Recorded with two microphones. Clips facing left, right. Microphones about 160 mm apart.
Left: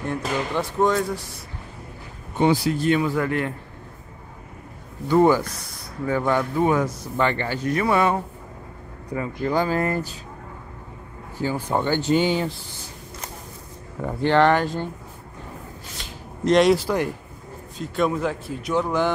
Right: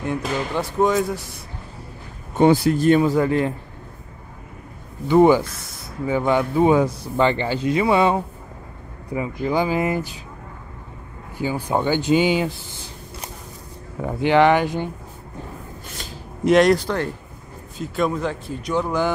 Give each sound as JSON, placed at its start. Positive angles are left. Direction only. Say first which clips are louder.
{"t": 0.0, "sound": "speech", "louder": "right 1 dB", "side_deg": -5}
{"t": 2.3, "sound": "speech", "louder": "right 4 dB", "side_deg": -50}
{"t": 3.2, "sound": "speech", "louder": "right 5 dB", "side_deg": -25}
{"t": 5.1, "sound": "speech", "louder": "right 3 dB", "side_deg": -20}
{"t": 6.9, "sound": "speech", "louder": "right 4 dB", "side_deg": -30}
{"t": 11.3, "sound": "speech", "louder": "right 1 dB", "side_deg": -15}
{"t": 14.0, "sound": "speech", "louder": "right 2 dB", "side_deg": -10}
{"t": 16.4, "sound": "speech", "louder": "right 2 dB", "side_deg": 0}